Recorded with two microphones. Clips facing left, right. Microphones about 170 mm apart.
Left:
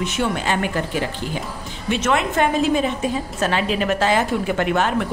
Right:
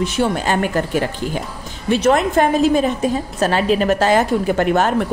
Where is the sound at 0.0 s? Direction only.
35° right (ahead or behind).